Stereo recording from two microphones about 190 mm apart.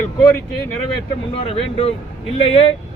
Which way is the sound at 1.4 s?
30° left (ahead or behind).